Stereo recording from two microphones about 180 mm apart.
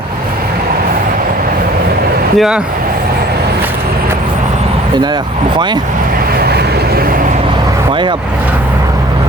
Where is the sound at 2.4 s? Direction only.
5° right (ahead or behind).